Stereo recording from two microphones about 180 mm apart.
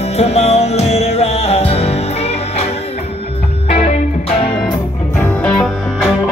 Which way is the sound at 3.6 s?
35° left (ahead or behind).